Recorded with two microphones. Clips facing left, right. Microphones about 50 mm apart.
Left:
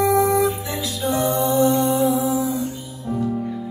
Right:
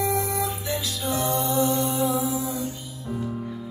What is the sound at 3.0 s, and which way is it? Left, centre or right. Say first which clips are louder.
Music: left 7 dB; centre.